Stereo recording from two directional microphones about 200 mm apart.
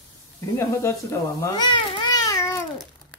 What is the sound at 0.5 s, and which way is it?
Speech, 15° left (ahead or behind).